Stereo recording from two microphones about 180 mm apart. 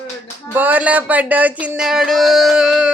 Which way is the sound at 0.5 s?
10° right (ahead or behind).